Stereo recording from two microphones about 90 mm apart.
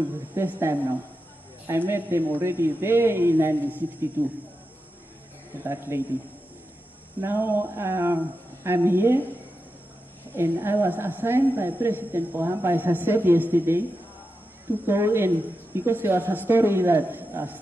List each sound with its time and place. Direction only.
0.4 s a woman's voice: 25° right (ahead or behind)
5.6 s a woman's voice: 30° right (ahead or behind)
7.2 s a woman's voice: 25° right (ahead or behind)
10.3 s a woman's voice: 25° right (ahead or behind)